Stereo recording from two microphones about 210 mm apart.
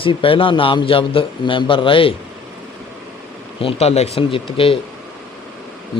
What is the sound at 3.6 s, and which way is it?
Speech, 30° left (ahead or behind).